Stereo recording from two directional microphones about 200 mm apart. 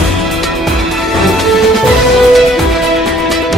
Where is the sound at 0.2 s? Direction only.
Centre (ahead or behind).